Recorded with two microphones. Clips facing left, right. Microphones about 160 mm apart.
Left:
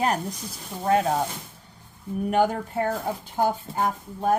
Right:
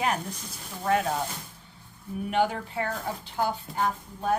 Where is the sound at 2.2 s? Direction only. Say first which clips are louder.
Left 4 dB; 45° left (ahead or behind).